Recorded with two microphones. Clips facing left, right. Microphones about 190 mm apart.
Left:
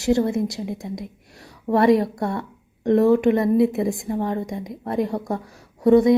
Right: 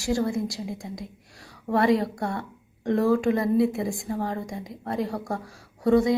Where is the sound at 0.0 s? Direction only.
20° left (ahead or behind).